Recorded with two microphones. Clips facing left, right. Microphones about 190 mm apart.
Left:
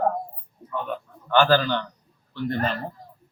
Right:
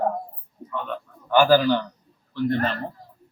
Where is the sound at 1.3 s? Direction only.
10° right (ahead or behind).